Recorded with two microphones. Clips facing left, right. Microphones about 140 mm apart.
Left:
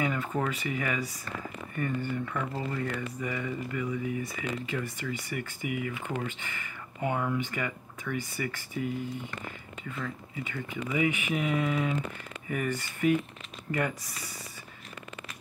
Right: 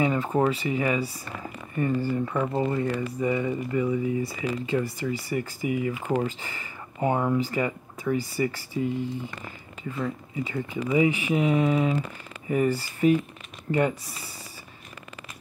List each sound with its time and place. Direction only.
0.0 s speech: 30° right (ahead or behind)